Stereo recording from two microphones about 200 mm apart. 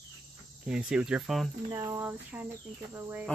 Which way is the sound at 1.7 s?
15° right (ahead or behind).